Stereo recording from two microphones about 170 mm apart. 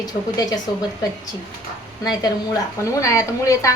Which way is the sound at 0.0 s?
20° left (ahead or behind).